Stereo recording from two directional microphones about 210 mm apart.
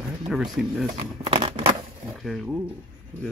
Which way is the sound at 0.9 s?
25° right (ahead or behind).